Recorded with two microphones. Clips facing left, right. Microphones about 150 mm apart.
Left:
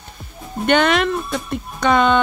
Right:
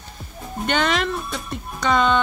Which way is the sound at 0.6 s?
60° left (ahead or behind).